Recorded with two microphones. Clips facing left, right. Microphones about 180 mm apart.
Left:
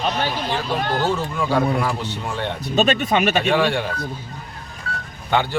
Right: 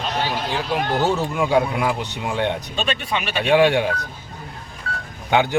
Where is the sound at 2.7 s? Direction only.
45° left (ahead or behind).